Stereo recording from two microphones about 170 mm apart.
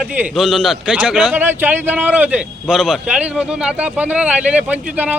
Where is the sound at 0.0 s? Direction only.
5° right (ahead or behind).